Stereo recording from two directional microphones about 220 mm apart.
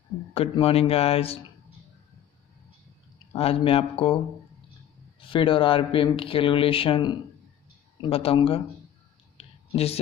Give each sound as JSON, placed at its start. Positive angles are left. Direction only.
{"t": 0.3, "sound": "speech", "side_deg": 25}
{"t": 3.3, "sound": "speech", "side_deg": 25}
{"t": 5.2, "sound": "speech", "side_deg": 25}
{"t": 9.4, "sound": "a sound", "side_deg": 25}